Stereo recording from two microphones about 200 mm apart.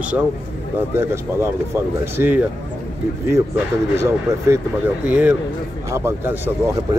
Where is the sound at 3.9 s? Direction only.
15° right (ahead or behind).